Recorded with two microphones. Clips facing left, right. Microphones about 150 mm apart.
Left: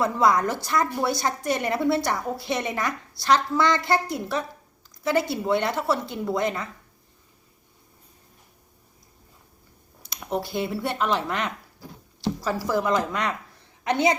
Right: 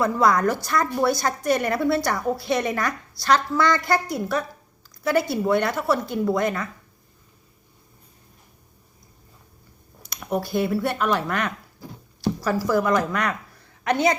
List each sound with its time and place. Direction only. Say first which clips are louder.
0.0 s a woman's voice: right 2 dB; 20° left (ahead or behind)
10.3 s a woman's voice: right 4 dB; 20° left (ahead or behind)